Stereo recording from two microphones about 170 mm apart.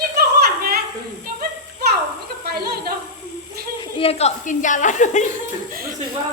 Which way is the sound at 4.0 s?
35° left (ahead or behind).